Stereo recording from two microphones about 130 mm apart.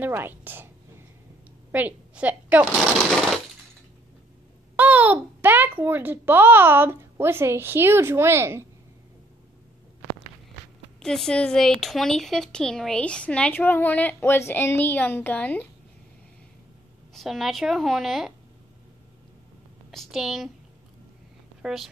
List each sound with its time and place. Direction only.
0.0 s a woman's voice: 15° right (ahead or behind)
1.7 s a woman's voice: 10° right (ahead or behind)
3.0 s a sound: 5° left (ahead or behind)
4.7 s a child's voice: 10° right (ahead or behind)
11.0 s speech: 5° left (ahead or behind)
17.1 s a woman's voice: centre (ahead or behind)
19.9 s a woman's voice: centre (ahead or behind)
21.6 s a woman's voice: centre (ahead or behind)